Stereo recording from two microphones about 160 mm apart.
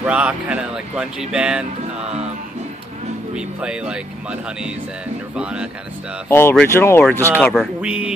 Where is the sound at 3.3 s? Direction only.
5° right (ahead or behind).